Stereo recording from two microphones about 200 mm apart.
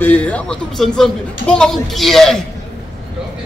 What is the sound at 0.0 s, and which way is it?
A man's voice, 5° left (ahead or behind).